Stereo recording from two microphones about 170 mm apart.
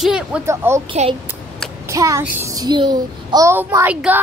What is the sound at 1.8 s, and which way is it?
A child's voice, 20° right (ahead or behind).